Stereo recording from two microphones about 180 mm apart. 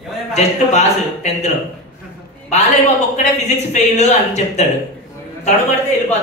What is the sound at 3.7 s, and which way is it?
A woman's voice, 40° left (ahead or behind).